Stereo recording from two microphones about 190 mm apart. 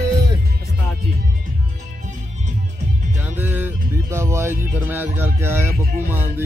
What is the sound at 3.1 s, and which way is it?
Music, 10° right (ahead or behind).